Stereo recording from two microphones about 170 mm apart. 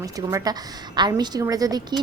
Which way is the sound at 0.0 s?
20° right (ahead or behind).